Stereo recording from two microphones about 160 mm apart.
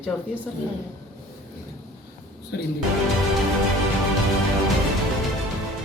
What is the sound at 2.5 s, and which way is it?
Speech, 90° left.